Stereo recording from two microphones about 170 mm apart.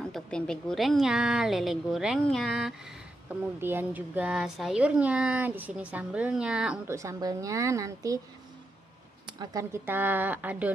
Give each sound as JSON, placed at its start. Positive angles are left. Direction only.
{"t": 0.0, "sound": "a woman's voice", "side_deg": 5}
{"t": 7.0, "sound": "a woman's voice", "side_deg": -20}
{"t": 9.2, "sound": "speech", "side_deg": -25}